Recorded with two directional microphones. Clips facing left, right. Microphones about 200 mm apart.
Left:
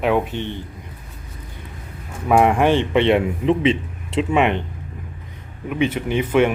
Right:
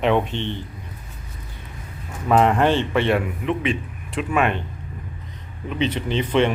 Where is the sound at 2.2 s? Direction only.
10° left (ahead or behind).